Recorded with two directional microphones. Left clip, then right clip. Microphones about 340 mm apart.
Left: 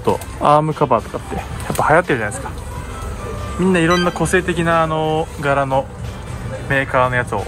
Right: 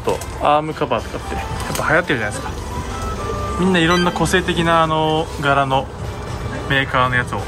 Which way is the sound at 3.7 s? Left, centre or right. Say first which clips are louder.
Left 1 dB; centre.